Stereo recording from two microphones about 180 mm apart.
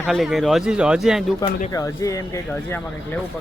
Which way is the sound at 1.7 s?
20° left (ahead or behind).